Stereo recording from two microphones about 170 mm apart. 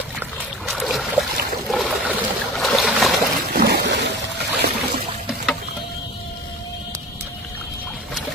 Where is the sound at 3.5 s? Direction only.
70° right (ahead or behind); by 4.1 s 90° right.